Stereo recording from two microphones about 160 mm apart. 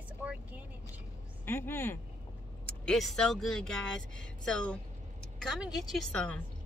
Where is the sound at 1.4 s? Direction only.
10° left (ahead or behind).